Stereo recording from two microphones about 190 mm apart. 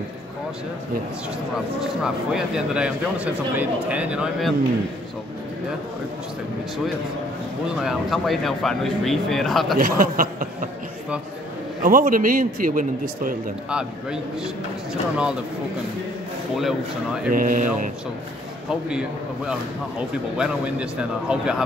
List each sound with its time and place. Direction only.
1.8 s speech: centre (ahead or behind)
7.7 s speech: 5° right (ahead or behind)
9.8 s speech: 50° right (ahead or behind)
11.8 s a man's voice: 45° right (ahead or behind)
13.7 s speech: 5° right (ahead or behind)
16.5 s speech: centre (ahead or behind)
17.3 s a man's voice: 45° right (ahead or behind)
18.7 s speech: 5° right (ahead or behind)